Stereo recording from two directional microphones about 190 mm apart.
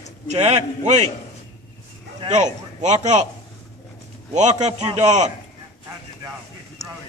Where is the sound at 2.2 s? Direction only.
35° right (ahead or behind).